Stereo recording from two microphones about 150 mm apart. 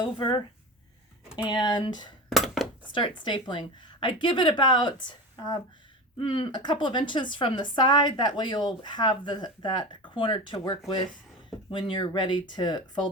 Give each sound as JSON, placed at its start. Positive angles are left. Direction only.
{"t": 0.0, "sound": "speech", "side_deg": 30}
{"t": 1.5, "sound": "speech", "side_deg": 25}